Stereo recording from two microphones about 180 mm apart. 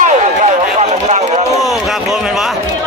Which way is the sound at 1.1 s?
40° right (ahead or behind).